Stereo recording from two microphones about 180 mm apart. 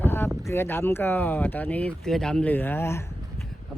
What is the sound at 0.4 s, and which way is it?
Speech, 15° left (ahead or behind).